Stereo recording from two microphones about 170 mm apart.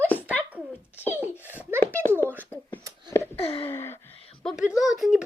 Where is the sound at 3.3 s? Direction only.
35° left (ahead or behind).